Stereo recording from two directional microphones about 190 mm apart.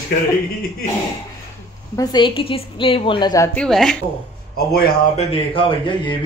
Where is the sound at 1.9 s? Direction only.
25° left (ahead or behind).